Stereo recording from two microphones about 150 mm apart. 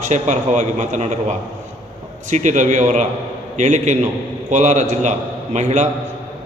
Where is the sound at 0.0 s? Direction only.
50° right (ahead or behind).